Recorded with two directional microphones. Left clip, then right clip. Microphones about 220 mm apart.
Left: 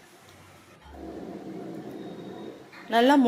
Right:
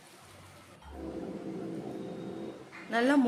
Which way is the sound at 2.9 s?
15° left (ahead or behind).